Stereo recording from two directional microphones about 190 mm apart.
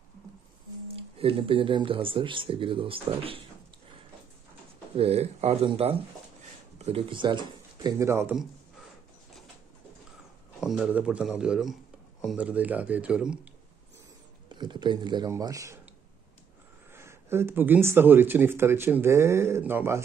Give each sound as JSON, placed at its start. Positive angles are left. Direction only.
{"t": 1.1, "sound": "speech", "side_deg": -30}
{"t": 4.9, "sound": "speech", "side_deg": -35}
{"t": 8.0, "sound": "speech", "side_deg": -15}
{"t": 10.6, "sound": "speech", "side_deg": 0}
{"t": 14.5, "sound": "a man's voice", "side_deg": -25}
{"t": 16.9, "sound": "speech", "side_deg": -15}